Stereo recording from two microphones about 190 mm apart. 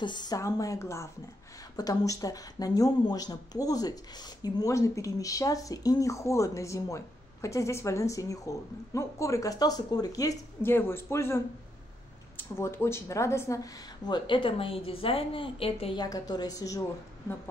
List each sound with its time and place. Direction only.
0.0 s a woman's voice: 25° left (ahead or behind)